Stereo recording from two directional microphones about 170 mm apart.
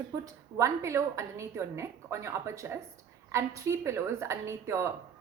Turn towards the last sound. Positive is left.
turn(degrees=-15)  # may be behind; listen again after turning